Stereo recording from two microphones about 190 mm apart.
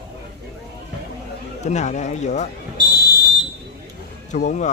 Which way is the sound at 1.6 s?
35° left (ahead or behind).